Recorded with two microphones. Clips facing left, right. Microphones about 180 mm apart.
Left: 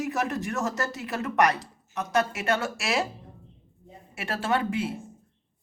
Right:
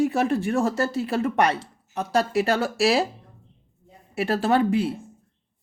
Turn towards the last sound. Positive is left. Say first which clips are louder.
# right 6 dB
turn(degrees=-35)  # may be behind; listen again after turning